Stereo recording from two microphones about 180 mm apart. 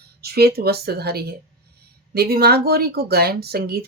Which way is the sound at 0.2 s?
60° right (ahead or behind).